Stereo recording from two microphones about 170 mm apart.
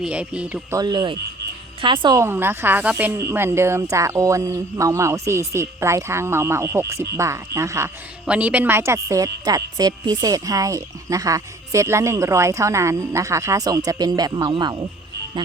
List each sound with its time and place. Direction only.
0.0 s speech: 5° right (ahead or behind)
0.7 s a woman's voice: 25° right (ahead or behind)